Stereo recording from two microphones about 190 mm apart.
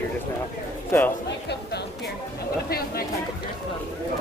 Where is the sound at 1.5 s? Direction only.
60° left (ahead or behind).